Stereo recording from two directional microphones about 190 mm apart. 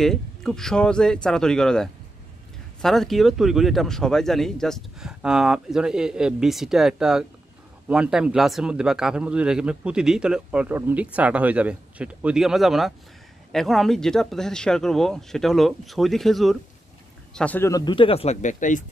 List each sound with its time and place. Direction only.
0.0 s speech: centre (ahead or behind); by 18.9 s 40° left (ahead or behind)